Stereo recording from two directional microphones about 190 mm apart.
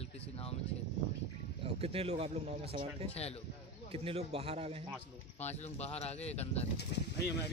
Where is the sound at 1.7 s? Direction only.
30° right (ahead or behind).